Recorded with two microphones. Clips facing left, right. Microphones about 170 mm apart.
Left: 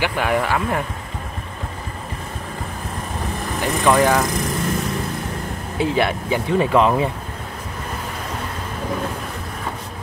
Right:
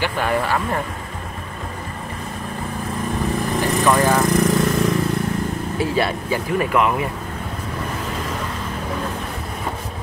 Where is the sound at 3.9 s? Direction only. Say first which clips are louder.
Left 2 dB; 15° left (ahead or behind).